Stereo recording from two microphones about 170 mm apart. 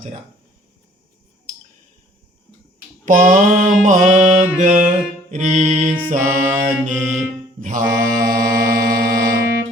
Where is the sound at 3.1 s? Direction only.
50° right (ahead or behind).